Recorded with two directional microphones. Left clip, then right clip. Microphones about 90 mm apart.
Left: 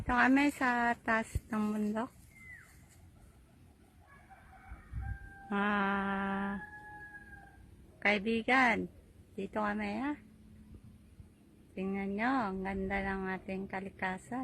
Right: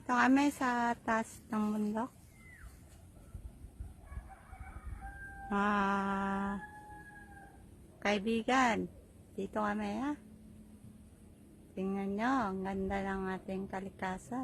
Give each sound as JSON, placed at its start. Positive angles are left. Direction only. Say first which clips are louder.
{"t": 0.1, "sound": "a woman's voice", "louder": "left 1 dB", "side_deg": 25}
{"t": 5.5, "sound": "a woman's voice", "louder": "even", "side_deg": 5}
{"t": 8.0, "sound": "a woman's voice", "louder": "left 2 dB", "side_deg": 10}
{"t": 11.7, "sound": "a woman's voice", "louder": "even", "side_deg": 10}
{"t": 14.1, "sound": "a woman's voice", "louder": "left 1 dB", "side_deg": 15}